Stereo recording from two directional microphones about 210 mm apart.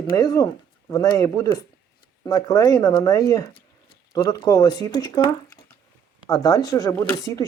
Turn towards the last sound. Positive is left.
turn(degrees=15)  # may be behind; listen again after turning